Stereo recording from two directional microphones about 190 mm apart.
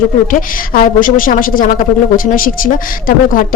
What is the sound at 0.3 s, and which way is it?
A woman's voice, 45° left (ahead or behind).